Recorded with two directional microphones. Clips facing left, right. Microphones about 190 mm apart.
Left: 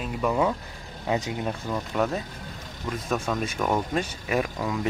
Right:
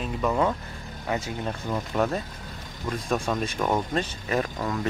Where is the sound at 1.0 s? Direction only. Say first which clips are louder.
Left 2 dB; 20° left (ahead or behind).